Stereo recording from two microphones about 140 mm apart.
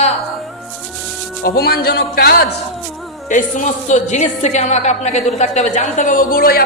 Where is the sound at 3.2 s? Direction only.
65° left (ahead or behind).